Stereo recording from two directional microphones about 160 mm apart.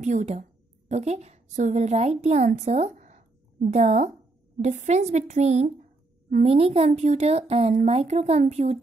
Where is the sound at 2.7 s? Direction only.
45° right (ahead or behind).